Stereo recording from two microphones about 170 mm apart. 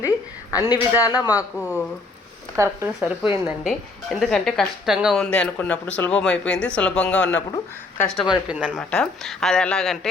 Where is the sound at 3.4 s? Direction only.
Centre (ahead or behind).